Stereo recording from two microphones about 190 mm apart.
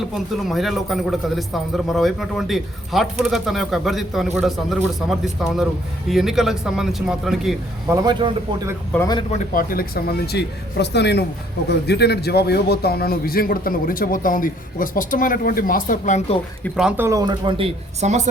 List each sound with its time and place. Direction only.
0.4 s a man's voice: centre (ahead or behind)
7.9 s a man's voice: 20° right (ahead or behind)
9.0 s a man's voice: 20° left (ahead or behind)
9.6 s a man's voice: 50° left (ahead or behind)
16.6 s a man's voice: centre (ahead or behind)
17.0 s speech: 15° right (ahead or behind); by 18.3 s 35° right (ahead or behind)